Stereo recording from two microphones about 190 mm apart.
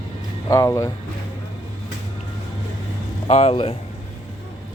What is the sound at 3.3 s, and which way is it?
Speech, 30° left (ahead or behind).